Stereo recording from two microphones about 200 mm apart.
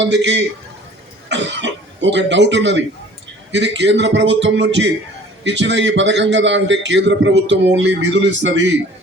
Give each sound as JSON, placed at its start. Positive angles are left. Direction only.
{"t": 0.0, "sound": "a man's voice", "side_deg": -60}